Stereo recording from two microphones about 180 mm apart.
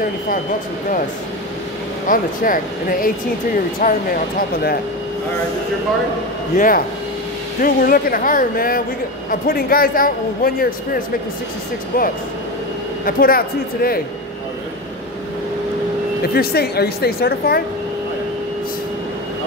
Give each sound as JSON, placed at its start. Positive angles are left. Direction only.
{"t": 2.0, "sound": "a woman's voice", "side_deg": 50}
{"t": 6.5, "sound": "a woman's voice", "side_deg": 45}
{"t": 13.0, "sound": "a woman's voice", "side_deg": 55}
{"t": 16.3, "sound": "a woman's voice", "side_deg": 60}